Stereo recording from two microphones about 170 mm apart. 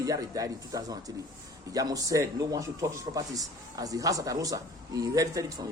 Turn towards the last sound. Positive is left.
turn(degrees=-20)  # may be behind; listen again after turning